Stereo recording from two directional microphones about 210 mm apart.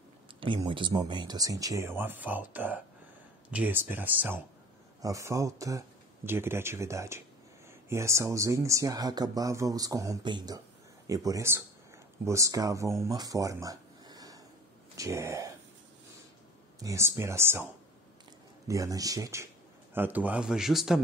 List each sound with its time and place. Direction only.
0.4 s speech: 20° right (ahead or behind)
13.0 s a sound: 15° right (ahead or behind)
15.0 s speech: 15° right (ahead or behind)
16.8 s speech: 15° right (ahead or behind)
18.7 s speech: 15° right (ahead or behind)